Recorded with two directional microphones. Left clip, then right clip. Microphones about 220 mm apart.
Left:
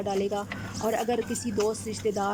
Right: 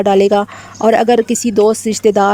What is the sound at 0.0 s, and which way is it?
Speech, 50° right (ahead or behind).